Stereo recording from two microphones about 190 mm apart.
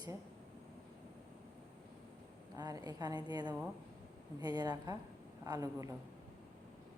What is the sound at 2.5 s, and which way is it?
A woman's voice, 20° right (ahead or behind).